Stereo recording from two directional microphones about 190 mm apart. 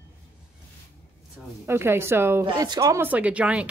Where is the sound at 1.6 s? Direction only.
10° right (ahead or behind).